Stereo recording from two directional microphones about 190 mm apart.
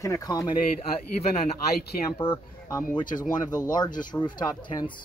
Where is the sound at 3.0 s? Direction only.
45° left (ahead or behind).